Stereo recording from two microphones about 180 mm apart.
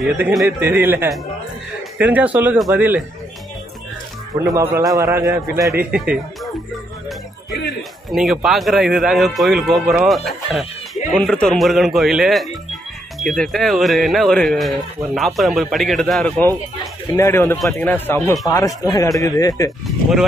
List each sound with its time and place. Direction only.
0.0 s speech: centre (ahead or behind)
0.6 s a man's voice: 10° right (ahead or behind)
4.6 s a man's voice: 20° right (ahead or behind)
5.9 s speech: 5° right (ahead or behind)
8.1 s speech: centre (ahead or behind)
17.1 s speech: 15° left (ahead or behind)